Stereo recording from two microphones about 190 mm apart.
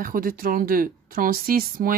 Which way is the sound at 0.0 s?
50° right (ahead or behind).